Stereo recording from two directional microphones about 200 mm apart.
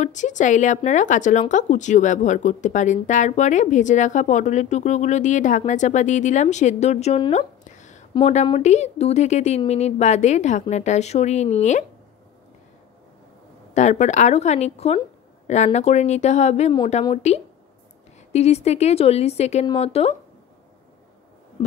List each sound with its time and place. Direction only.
0.0 s speech: 35° left (ahead or behind)
13.7 s speech: 35° left (ahead or behind)
16.7 s speech: 25° left (ahead or behind)